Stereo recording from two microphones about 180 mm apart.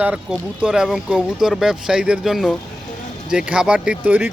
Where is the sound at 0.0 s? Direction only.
5° right (ahead or behind).